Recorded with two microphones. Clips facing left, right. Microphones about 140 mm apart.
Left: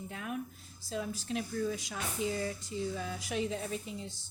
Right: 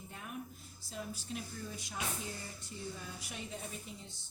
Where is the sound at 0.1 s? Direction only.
90° left.